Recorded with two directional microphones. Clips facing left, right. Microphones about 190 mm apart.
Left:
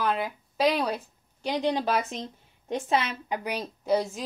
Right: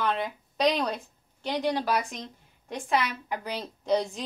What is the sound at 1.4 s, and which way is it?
A woman's voice, 15° left (ahead or behind).